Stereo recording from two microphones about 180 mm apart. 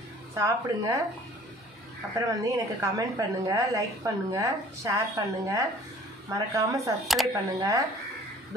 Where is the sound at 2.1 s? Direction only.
20° right (ahead or behind).